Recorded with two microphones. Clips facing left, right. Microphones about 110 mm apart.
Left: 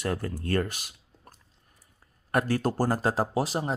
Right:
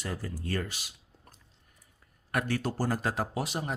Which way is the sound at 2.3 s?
40° left (ahead or behind).